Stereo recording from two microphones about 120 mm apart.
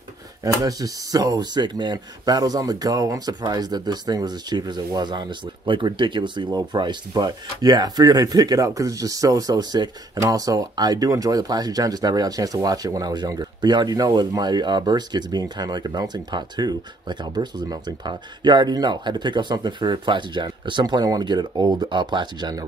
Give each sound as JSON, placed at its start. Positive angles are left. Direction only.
{"t": 0.4, "sound": "speech", "side_deg": -30}